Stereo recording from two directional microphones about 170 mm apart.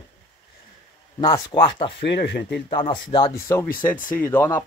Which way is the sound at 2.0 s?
85° left.